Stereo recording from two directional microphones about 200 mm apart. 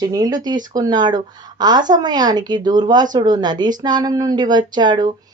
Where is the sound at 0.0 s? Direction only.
20° right (ahead or behind).